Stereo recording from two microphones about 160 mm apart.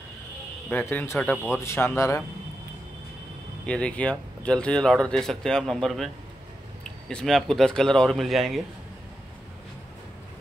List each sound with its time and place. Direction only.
0.7 s a man's voice: 10° left (ahead or behind)
3.6 s speech: 5° left (ahead or behind)